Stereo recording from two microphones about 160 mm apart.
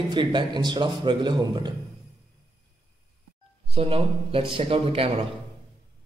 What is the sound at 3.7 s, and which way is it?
A man's voice, 35° right (ahead or behind).